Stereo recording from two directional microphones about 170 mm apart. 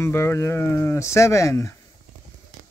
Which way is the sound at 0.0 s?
15° left (ahead or behind).